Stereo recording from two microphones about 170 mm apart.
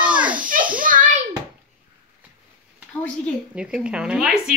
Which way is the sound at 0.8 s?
55° right (ahead or behind).